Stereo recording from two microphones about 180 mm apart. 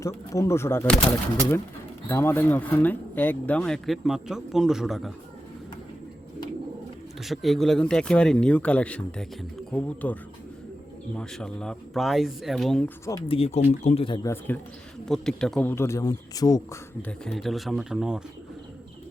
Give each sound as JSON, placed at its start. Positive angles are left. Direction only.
{"t": 0.0, "sound": "speech", "side_deg": 15}
{"t": 2.0, "sound": "speech", "side_deg": 10}
{"t": 7.2, "sound": "speech", "side_deg": 0}
{"t": 13.2, "sound": "speech", "side_deg": 30}
{"t": 15.0, "sound": "speech", "side_deg": 0}
{"t": 15.7, "sound": "speech", "side_deg": 15}
{"t": 17.1, "sound": "speech", "side_deg": 0}